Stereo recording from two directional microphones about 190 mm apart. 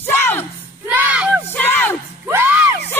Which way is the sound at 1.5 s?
10° left (ahead or behind).